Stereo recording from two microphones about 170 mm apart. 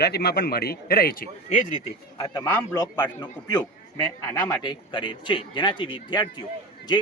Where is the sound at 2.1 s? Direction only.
25° left (ahead or behind).